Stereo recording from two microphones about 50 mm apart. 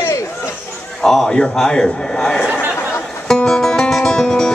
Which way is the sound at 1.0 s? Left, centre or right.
Centre.